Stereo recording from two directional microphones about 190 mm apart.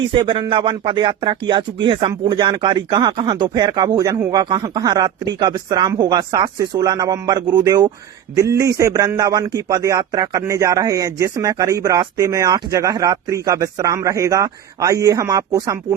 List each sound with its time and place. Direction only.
0.1 s speech: 25° right (ahead or behind)